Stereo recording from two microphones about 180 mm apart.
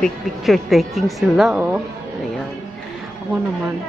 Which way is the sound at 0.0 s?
Centre (ahead or behind).